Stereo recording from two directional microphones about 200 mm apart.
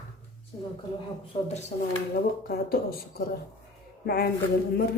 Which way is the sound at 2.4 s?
50° left (ahead or behind).